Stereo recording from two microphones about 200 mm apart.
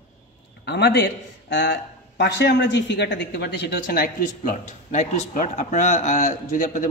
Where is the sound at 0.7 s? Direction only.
55° left (ahead or behind).